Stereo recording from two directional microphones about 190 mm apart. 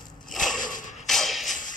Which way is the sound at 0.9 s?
Centre (ahead or behind).